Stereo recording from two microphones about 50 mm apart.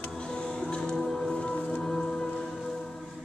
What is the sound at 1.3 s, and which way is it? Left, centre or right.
Music, centre.